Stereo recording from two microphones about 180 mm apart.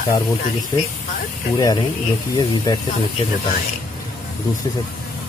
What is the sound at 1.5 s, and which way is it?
Speech, 20° left (ahead or behind).